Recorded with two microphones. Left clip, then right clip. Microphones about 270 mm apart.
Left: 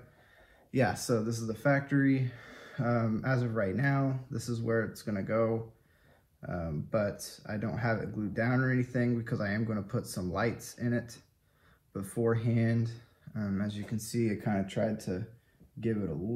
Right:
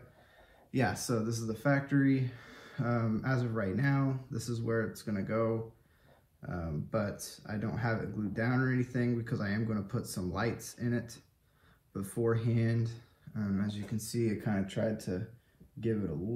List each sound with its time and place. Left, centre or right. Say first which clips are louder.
0.7 s speech: left 3 dB; centre